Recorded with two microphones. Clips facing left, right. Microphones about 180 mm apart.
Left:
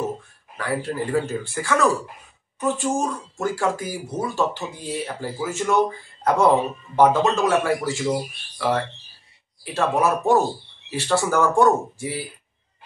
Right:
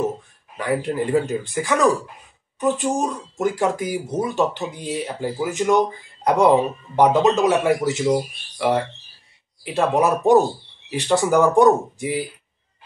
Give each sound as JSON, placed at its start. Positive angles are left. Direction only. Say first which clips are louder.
{"t": 0.6, "sound": "speech", "louder": "right 3 dB", "side_deg": -20}